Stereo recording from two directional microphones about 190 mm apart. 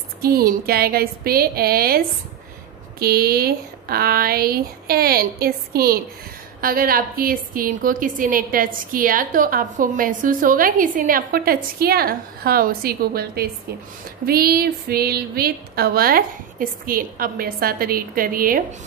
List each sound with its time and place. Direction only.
0.2 s a woman's voice: 50° right (ahead or behind)